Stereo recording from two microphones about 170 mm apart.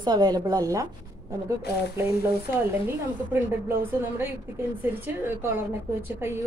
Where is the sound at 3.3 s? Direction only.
15° right (ahead or behind).